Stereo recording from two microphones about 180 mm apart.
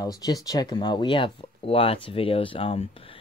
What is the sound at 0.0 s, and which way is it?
Speech, 20° left (ahead or behind).